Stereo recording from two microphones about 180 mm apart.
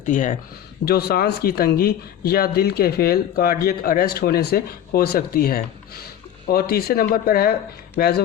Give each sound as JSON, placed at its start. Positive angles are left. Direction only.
{"t": 0.0, "sound": "speech", "side_deg": 45}
{"t": 0.9, "sound": "speech", "side_deg": 60}